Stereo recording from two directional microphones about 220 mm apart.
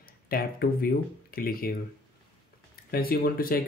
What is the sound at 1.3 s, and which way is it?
Speech, 40° left (ahead or behind).